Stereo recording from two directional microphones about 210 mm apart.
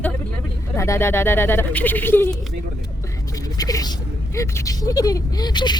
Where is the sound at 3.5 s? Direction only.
15° left (ahead or behind).